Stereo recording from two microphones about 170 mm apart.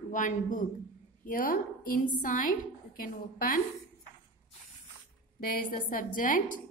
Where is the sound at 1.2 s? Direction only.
55° left (ahead or behind).